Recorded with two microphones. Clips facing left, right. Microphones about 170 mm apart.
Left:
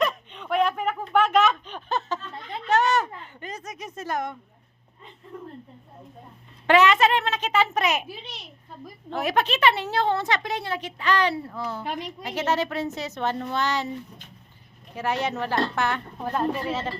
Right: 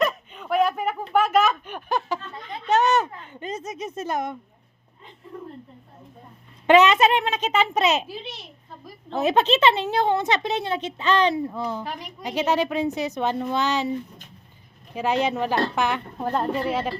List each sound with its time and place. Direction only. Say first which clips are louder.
0.0 s a sound: right 1 dB; 5° right (ahead or behind); by 4.4 s 20° right (ahead or behind)
6.7 s a woman's voice: right 3 dB; 20° right (ahead or behind)
9.1 s a woman's voice: right 4 dB; 25° right (ahead or behind)
11.8 s a woman's voice: left 2 dB; 20° left (ahead or behind)
12.2 s a woman's voice: right 3 dB; 15° right (ahead or behind)
14.9 s a woman's voice: right 4 dB; 15° right (ahead or behind)